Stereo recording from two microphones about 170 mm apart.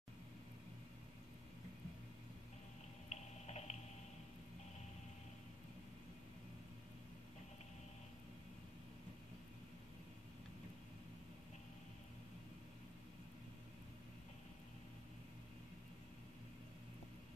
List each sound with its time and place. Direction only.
3.1 s boiling: 40° left (ahead or behind)